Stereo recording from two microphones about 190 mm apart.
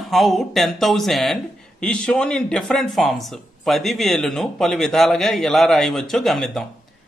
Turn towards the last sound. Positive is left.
turn(degrees=0)  # may be behind; listen again after turning